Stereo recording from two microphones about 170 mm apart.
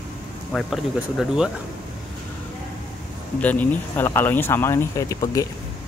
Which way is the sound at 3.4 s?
10° left (ahead or behind).